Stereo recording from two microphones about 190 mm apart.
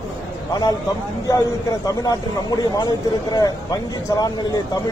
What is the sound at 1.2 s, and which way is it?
A man's voice, 20° left (ahead or behind).